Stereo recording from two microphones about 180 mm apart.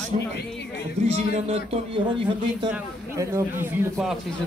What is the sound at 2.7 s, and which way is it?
Speech, 15° right (ahead or behind).